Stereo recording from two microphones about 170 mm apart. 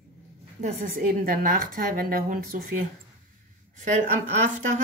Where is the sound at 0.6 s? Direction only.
55° right (ahead or behind).